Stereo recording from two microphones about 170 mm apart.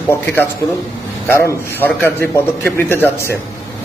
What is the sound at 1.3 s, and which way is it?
A man's voice, 15° left (ahead or behind).